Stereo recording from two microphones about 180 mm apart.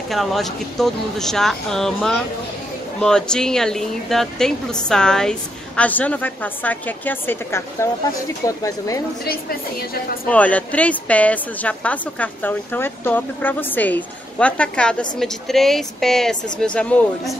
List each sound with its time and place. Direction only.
0.1 s speech: centre (ahead or behind); by 9.0 s 20° left (ahead or behind)
9.2 s a woman's voice: 60° left (ahead or behind)
10.3 s speech: 10° left (ahead or behind)